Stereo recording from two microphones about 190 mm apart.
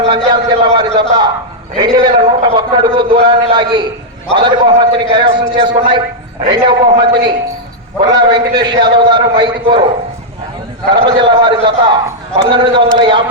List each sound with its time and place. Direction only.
0.0 s a man's voice: 25° right (ahead or behind)
10.9 s a man's voice: 25° right (ahead or behind)